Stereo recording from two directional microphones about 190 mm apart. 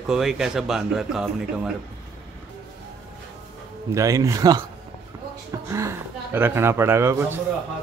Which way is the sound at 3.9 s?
15° right (ahead or behind).